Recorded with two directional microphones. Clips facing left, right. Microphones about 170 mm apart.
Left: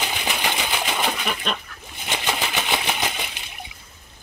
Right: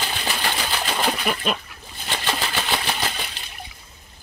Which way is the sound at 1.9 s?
20° left (ahead or behind).